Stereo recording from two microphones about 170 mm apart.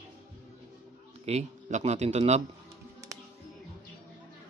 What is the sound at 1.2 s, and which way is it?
Speech, 40° right (ahead or behind).